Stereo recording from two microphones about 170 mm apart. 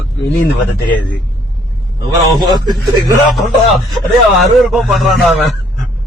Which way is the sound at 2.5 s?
25° right (ahead or behind).